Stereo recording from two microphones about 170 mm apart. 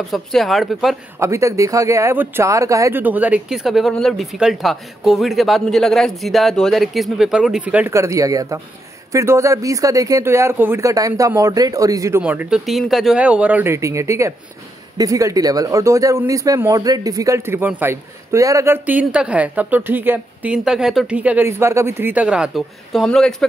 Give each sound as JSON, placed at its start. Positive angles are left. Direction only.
{"t": 0.1, "sound": "speech", "side_deg": 0}
{"t": 1.2, "sound": "speech", "side_deg": -20}
{"t": 12.2, "sound": "speech", "side_deg": -10}